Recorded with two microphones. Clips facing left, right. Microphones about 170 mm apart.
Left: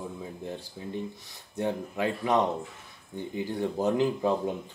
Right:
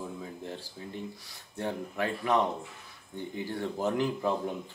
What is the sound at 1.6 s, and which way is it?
Speech, 15° left (ahead or behind).